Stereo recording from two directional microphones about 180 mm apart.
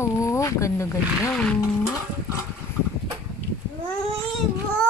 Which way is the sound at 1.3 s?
5° left (ahead or behind).